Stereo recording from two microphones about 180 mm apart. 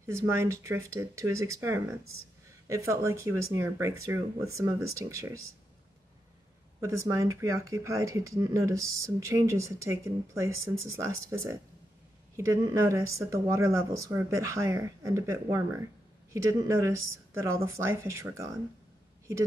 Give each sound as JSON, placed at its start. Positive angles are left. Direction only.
{"t": 0.0, "sound": "speech", "side_deg": -15}
{"t": 7.0, "sound": "speech", "side_deg": -15}